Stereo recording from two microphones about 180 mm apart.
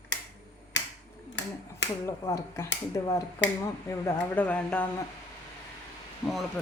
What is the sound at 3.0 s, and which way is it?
Speech, 15° left (ahead or behind).